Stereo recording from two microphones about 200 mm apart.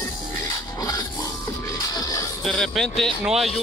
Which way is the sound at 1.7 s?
20° left (ahead or behind).